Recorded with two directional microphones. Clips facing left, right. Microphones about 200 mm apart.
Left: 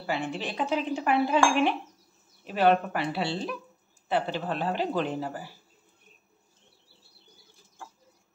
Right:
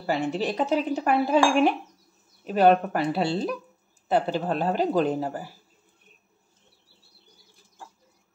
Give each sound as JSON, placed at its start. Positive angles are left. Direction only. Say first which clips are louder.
{"t": 0.0, "sound": "speech", "louder": "right 5 dB", "side_deg": -40}